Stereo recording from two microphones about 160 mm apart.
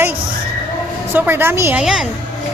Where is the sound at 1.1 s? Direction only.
10° right (ahead or behind).